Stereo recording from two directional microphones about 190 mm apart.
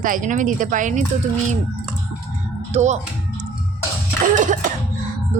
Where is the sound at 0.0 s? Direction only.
45° right (ahead or behind).